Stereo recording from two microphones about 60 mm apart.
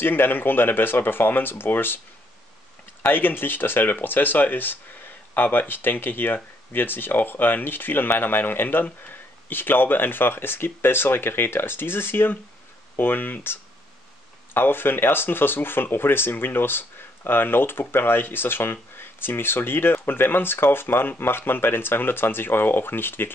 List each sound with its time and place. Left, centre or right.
0.0 s speech: left
3.1 s speech: left